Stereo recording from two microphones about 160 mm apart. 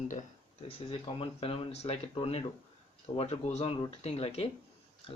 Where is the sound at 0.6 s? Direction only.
35° left (ahead or behind).